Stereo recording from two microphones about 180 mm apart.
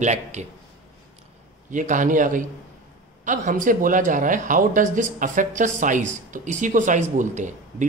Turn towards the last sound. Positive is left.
turn(degrees=-45)  # may be behind; listen again after turning